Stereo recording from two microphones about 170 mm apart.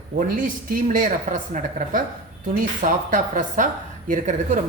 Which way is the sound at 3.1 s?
50° right (ahead or behind).